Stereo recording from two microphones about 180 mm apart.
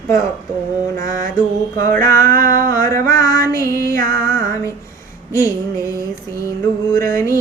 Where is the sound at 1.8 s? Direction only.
15° left (ahead or behind).